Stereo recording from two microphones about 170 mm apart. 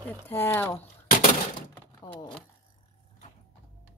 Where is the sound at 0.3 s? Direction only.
15° left (ahead or behind).